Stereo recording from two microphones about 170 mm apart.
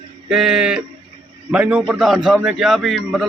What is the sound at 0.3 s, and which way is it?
Speech, 5° right (ahead or behind).